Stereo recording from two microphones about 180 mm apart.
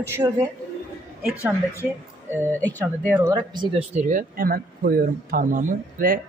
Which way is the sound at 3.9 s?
45° right (ahead or behind).